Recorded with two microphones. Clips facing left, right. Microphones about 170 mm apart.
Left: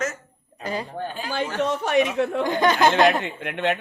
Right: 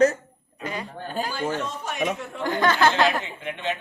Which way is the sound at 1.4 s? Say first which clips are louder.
Left 4 dB; 75° left (ahead or behind).